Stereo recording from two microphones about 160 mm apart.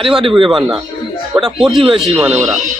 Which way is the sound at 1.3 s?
5° right (ahead or behind).